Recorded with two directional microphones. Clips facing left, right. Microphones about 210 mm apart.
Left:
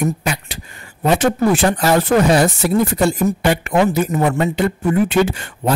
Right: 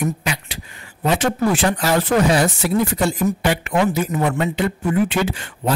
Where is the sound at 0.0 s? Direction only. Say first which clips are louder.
Left 3 dB; 45° left (ahead or behind).